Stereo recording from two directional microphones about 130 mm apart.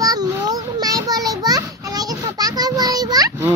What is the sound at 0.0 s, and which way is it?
Children playing, 30° right (ahead or behind).